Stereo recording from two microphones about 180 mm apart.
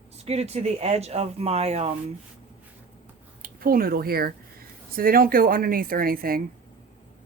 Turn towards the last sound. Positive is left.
turn(degrees=-55)  # may be behind; listen again after turning